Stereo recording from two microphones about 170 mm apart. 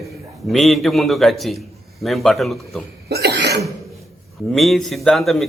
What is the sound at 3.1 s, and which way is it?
Cough, 75° right (ahead or behind).